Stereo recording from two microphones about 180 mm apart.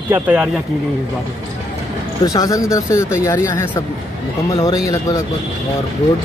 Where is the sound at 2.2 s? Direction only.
20° left (ahead or behind).